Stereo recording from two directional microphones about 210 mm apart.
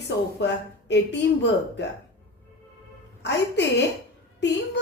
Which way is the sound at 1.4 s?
55° left (ahead or behind).